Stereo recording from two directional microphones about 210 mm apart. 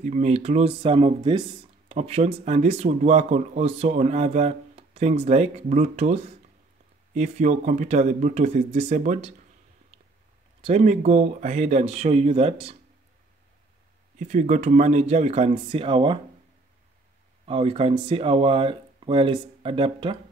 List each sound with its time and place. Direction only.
0.0 s speech: 35° right (ahead or behind)
7.2 s speech: 35° right (ahead or behind)
10.6 s speech: 30° right (ahead or behind)
14.1 s speech: 35° right (ahead or behind)
17.5 s speech: 25° right (ahead or behind)